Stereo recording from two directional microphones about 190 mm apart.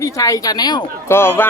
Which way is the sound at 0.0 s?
15° left (ahead or behind).